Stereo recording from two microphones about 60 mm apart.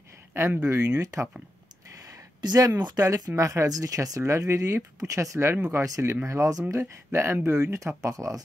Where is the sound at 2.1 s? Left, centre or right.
Right.